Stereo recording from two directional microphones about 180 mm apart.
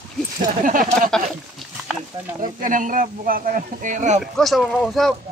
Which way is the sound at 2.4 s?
45° right (ahead or behind).